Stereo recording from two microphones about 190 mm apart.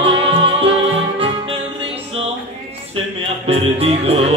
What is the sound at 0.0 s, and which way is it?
Music, 30° right (ahead or behind).